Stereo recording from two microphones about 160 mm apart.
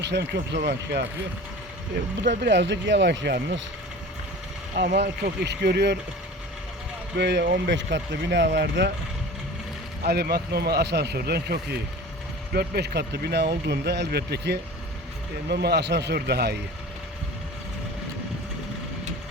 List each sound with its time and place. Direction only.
0.0 s speech: 90° right
2.4 s speech: 90° right
4.8 s speech: 90° right
7.2 s speech: 90° right
10.1 s speech: 90° right